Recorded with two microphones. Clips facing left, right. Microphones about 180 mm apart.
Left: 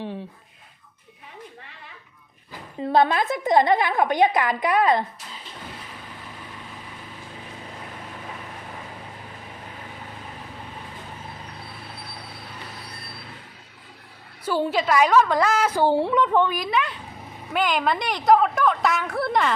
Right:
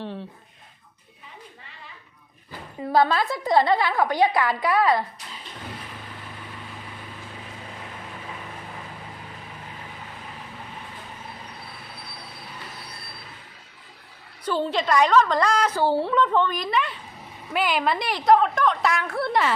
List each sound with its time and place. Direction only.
2.5 s a woman's voice: 20° left (ahead or behind)
14.4 s a woman's voice: 10° left (ahead or behind)